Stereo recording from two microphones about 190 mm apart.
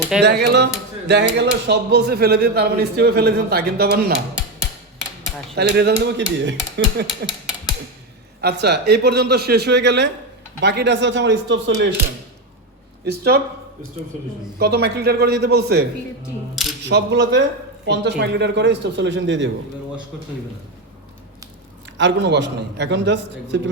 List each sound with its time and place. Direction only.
0.2 s speech: 60° right (ahead or behind)
5.5 s speech: 60° right (ahead or behind)
8.4 s a man's voice: 60° right (ahead or behind); by 11.9 s 75° right (ahead or behind)
13.1 s speech: 55° right (ahead or behind)
14.6 s speech: 60° right (ahead or behind)
21.9 s a man's voice: 65° right (ahead or behind)